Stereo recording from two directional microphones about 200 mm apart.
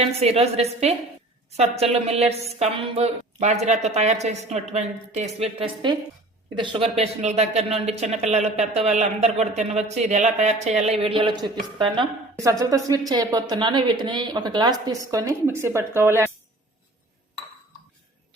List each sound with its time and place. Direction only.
0.0 s a woman's voice: 30° right (ahead or behind); by 16.3 s 10° right (ahead or behind)